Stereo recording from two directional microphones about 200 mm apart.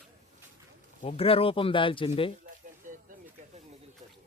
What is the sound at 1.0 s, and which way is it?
Speech, 30° left (ahead or behind).